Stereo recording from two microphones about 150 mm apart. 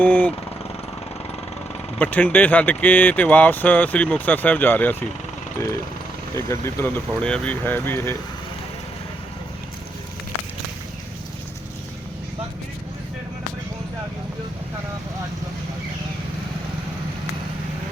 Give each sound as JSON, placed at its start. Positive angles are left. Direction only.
{"t": 0.0, "sound": "speech", "side_deg": 10}
{"t": 2.0, "sound": "speech", "side_deg": 10}
{"t": 6.3, "sound": "speech", "side_deg": 20}